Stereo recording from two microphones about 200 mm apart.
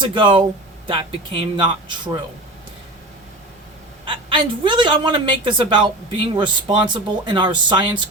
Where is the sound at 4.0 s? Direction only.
25° right (ahead or behind).